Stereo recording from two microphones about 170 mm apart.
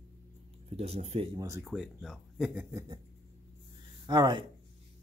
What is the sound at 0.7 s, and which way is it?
Speech, 35° right (ahead or behind).